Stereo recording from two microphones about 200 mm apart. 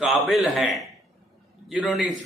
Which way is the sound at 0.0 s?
Centre (ahead or behind).